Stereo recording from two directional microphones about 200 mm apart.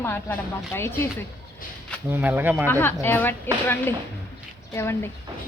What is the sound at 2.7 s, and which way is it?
Speech, 10° left (ahead or behind).